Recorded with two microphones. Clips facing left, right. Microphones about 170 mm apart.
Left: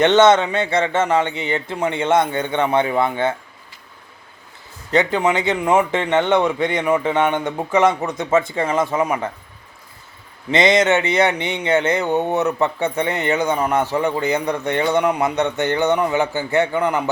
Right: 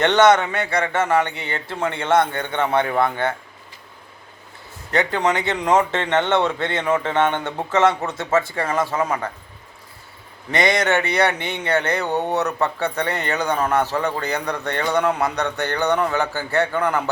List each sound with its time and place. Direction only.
0.0 s speech: 20° left (ahead or behind)
4.9 s a man's voice: 15° left (ahead or behind)
10.5 s speech: 20° left (ahead or behind)